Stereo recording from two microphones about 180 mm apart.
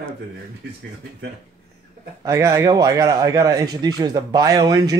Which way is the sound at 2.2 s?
15° right (ahead or behind).